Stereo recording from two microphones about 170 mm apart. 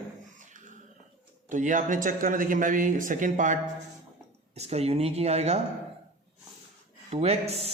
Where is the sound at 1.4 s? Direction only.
50° right (ahead or behind).